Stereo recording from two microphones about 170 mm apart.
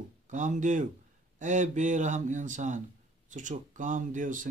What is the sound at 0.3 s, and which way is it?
Speech, 45° right (ahead or behind).